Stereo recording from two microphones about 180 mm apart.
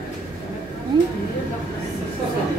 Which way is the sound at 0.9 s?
25° right (ahead or behind).